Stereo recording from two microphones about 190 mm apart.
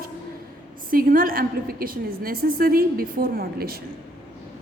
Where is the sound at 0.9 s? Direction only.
50° right (ahead or behind).